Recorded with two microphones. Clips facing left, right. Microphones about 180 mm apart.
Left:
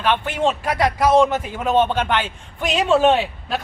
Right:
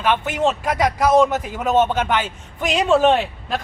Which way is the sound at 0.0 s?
5° right (ahead or behind).